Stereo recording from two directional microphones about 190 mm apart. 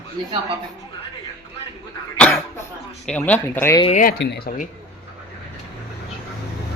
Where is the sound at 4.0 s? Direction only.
50° left (ahead or behind).